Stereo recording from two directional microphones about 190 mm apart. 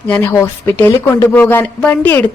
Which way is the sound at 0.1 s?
10° left (ahead or behind).